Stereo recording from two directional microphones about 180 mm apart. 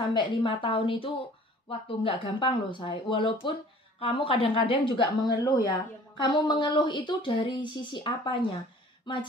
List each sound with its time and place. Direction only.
0.1 s speech: 25° left (ahead or behind)